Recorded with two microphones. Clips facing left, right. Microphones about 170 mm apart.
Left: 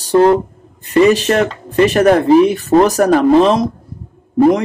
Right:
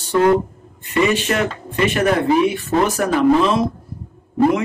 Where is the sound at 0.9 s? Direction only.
35° left (ahead or behind).